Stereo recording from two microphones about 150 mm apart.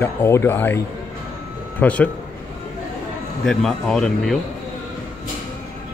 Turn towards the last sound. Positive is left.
turn(degrees=5)  # may be behind; listen again after turning